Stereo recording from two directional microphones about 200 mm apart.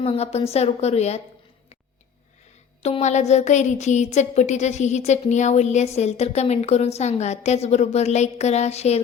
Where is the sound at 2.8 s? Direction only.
35° left (ahead or behind).